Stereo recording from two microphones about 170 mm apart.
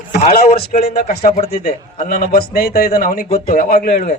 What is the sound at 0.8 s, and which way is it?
A man's voice, 60° left (ahead or behind).